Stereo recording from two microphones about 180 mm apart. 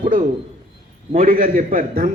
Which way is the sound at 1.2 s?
50° right (ahead or behind).